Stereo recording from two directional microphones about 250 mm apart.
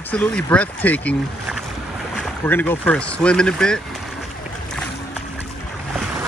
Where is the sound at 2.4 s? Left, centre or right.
Centre.